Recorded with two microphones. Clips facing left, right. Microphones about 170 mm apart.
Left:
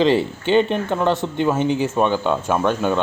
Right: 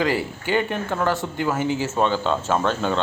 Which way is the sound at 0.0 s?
25° left (ahead or behind).